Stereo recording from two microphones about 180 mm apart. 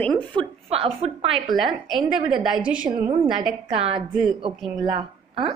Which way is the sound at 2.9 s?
35° right (ahead or behind).